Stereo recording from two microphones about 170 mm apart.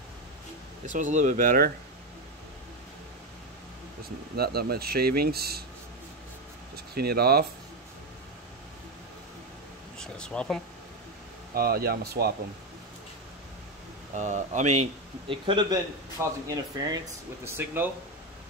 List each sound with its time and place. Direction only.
0.8 s speech: 45° right (ahead or behind)
4.4 s speech: 65° right (ahead or behind)
7.0 s speech: 65° right (ahead or behind)
9.9 s speech: 5° left (ahead or behind)
11.5 s speech: 65° right (ahead or behind)
14.1 s speech: 45° right (ahead or behind); by 17.0 s 25° right (ahead or behind)
17.5 s speech: 10° right (ahead or behind)